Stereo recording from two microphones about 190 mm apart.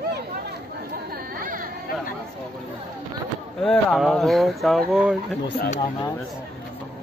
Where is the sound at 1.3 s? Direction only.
45° right (ahead or behind).